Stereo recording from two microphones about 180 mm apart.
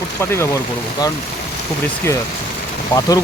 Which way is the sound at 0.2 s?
15° left (ahead or behind).